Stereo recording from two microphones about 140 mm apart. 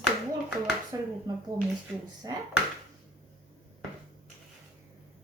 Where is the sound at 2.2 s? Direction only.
25° right (ahead or behind).